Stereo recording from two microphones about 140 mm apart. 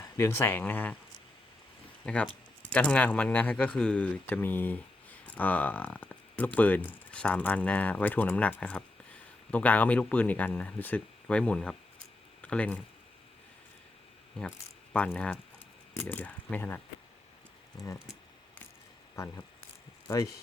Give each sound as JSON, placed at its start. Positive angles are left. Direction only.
{"t": 0.0, "sound": "speech", "side_deg": 20}
{"t": 2.0, "sound": "speech", "side_deg": 5}
{"t": 14.9, "sound": "speech", "side_deg": 10}
{"t": 19.1, "sound": "speech", "side_deg": 20}